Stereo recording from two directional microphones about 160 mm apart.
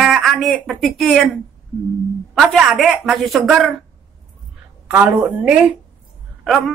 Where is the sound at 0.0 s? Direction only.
Centre (ahead or behind).